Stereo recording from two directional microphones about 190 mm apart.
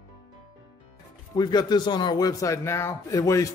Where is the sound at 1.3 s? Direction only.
20° left (ahead or behind).